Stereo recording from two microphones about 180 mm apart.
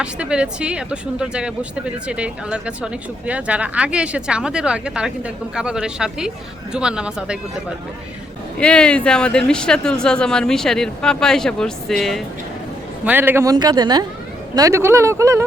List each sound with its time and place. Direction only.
0.0 s speech: 5° right (ahead or behind)
8.5 s speech: 5° left (ahead or behind)
13.1 s speech: 10° right (ahead or behind)